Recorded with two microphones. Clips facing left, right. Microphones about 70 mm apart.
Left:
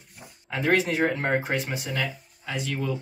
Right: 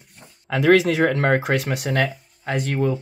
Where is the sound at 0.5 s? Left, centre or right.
Right.